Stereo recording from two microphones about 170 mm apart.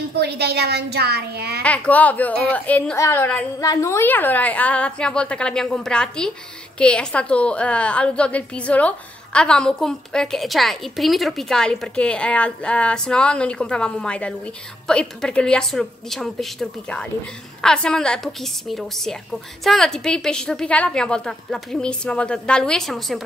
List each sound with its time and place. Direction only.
0.2 s speech: 70° right (ahead or behind)
1.6 s a woman's voice: 10° left (ahead or behind)